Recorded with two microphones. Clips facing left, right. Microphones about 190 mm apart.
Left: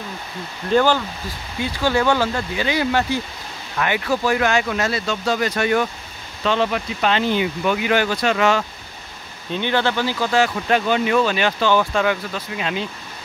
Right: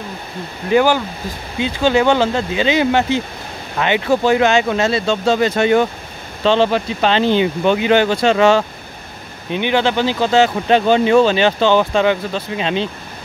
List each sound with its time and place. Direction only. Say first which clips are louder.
0.7 s speech: right 3 dB; 10° right (ahead or behind); by 8.6 s 30° right (ahead or behind)
9.5 s speech: right 4 dB; 15° right (ahead or behind)